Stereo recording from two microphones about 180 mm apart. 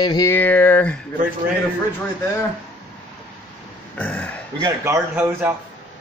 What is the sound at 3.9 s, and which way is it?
Burping, 10° left (ahead or behind).